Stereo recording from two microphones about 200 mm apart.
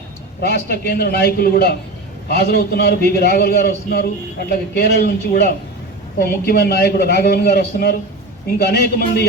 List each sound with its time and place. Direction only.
0.4 s a man's voice: 55° left (ahead or behind)